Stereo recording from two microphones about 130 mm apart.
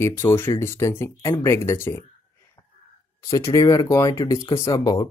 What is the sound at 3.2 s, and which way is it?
Speech, 25° left (ahead or behind).